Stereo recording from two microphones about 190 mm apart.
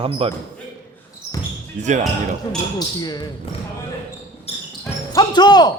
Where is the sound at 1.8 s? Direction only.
40° right (ahead or behind).